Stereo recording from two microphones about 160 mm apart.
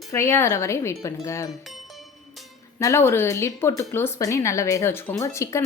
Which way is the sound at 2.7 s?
15° left (ahead or behind).